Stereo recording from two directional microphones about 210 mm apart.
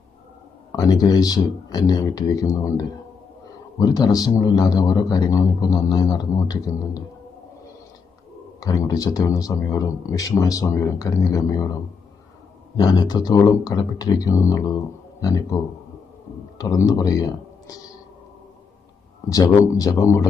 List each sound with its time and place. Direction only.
0.7 s a man's voice: 20° left (ahead or behind)
8.6 s a man's voice: 15° left (ahead or behind)
16.6 s a man's voice: 15° left (ahead or behind)
19.3 s a man's voice: 15° left (ahead or behind)